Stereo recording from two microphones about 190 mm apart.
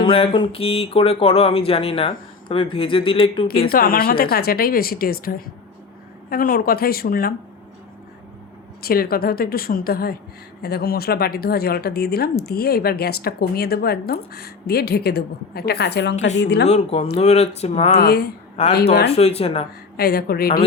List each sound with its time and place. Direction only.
0.0 s a sound: 30° left (ahead or behind)
0.3 s speech: 30° left (ahead or behind)
3.7 s a woman's voice: 50° left (ahead or behind)
8.8 s a woman's voice: 50° left (ahead or behind)
16.6 s speech: 35° left (ahead or behind)
18.0 s a woman's voice: 60° left (ahead or behind)
18.6 s speech: 35° left (ahead or behind)
20.0 s a woman's voice: 55° left (ahead or behind)